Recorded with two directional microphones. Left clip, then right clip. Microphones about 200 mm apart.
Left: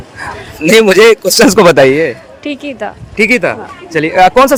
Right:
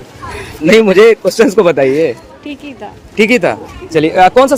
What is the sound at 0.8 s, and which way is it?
A man's voice, 60° left (ahead or behind).